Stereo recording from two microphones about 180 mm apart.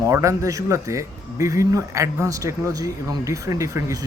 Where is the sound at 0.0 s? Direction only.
15° right (ahead or behind).